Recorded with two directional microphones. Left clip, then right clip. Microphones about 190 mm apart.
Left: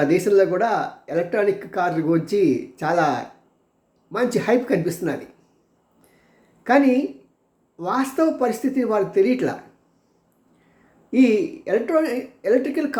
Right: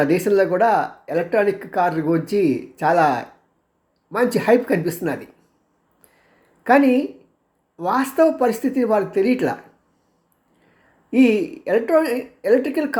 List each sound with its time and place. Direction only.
0.0 s speech: 15° right (ahead or behind)
6.7 s speech: 15° right (ahead or behind)
11.1 s speech: 15° right (ahead or behind)